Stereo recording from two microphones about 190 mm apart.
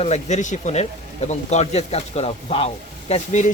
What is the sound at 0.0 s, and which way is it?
Speech, 35° left (ahead or behind).